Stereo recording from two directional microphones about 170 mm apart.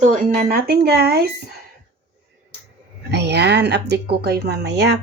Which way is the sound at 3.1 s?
85° right.